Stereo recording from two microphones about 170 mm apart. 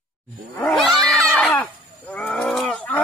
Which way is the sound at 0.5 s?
5° left (ahead or behind).